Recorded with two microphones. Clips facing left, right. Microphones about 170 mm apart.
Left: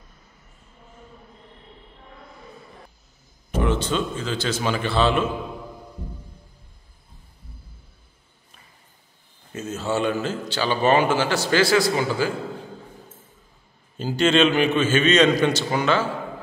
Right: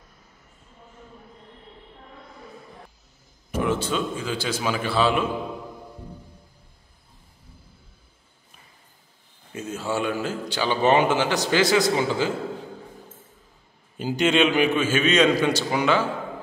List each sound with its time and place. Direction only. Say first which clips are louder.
3.5 s a man's voice: left 1 dB; 10° right (ahead or behind)
9.5 s a man's voice: left 2 dB; 10° right (ahead or behind)
13.9 s a man's voice: left 2 dB; 15° right (ahead or behind)